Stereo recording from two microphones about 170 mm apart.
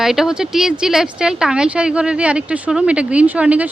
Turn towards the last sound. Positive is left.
turn(degrees=-10)  # may be behind; listen again after turning